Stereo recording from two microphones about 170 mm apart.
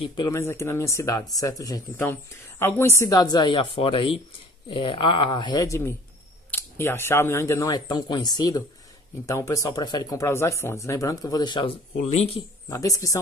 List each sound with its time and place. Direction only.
0.0 s speech: 30° left (ahead or behind)
0.3 s speech: 15° left (ahead or behind)
12.0 s speech: 40° left (ahead or behind)
12.6 s speech: 20° left (ahead or behind)